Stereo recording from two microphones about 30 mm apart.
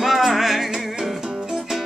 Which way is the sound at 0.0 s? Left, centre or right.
Centre.